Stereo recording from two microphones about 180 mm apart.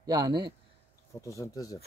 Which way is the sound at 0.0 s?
20° right (ahead or behind).